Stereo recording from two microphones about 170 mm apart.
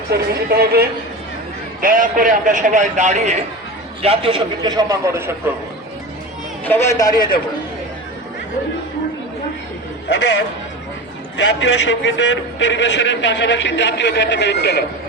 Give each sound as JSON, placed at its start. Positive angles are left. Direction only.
{"t": 0.1, "sound": "speech", "side_deg": -70}
{"t": 1.8, "sound": "a man's voice", "side_deg": -55}
{"t": 4.0, "sound": "a man's voice", "side_deg": -35}
{"t": 6.7, "sound": "a man's voice", "side_deg": 15}
{"t": 11.3, "sound": "a man's voice", "side_deg": 90}